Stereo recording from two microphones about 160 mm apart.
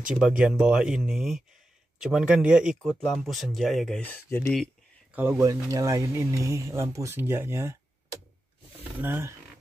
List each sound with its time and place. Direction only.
0.4 s speech: 5° right (ahead or behind)
2.8 s speech: 5° left (ahead or behind)
5.1 s speech: 10° right (ahead or behind)
8.8 s speech: 10° right (ahead or behind)